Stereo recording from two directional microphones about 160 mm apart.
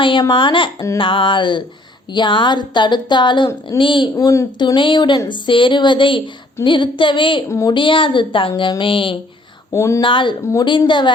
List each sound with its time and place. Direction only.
0.0 s a woman's voice: 30° left (ahead or behind)
4.1 s a woman's voice: 20° left (ahead or behind)
7.4 s a woman's voice: 15° left (ahead or behind)
7.7 s a woman's voice: 30° left (ahead or behind)
9.7 s a woman's voice: 15° left (ahead or behind)
10.0 s a woman's voice: 30° left (ahead or behind)